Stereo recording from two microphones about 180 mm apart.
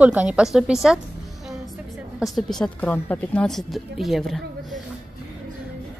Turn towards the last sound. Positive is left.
turn(degrees=0)  # may be behind; listen again after turning